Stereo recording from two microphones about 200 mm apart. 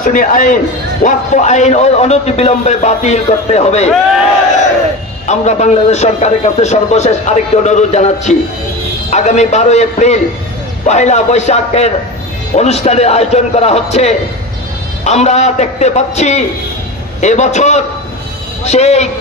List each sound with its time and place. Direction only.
0.0 s a man's voice: 45° left (ahead or behind)
5.2 s a man's voice: 35° left (ahead or behind)